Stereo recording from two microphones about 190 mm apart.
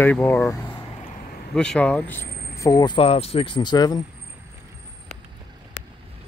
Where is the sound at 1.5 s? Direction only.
5° left (ahead or behind); by 4.0 s 20° left (ahead or behind).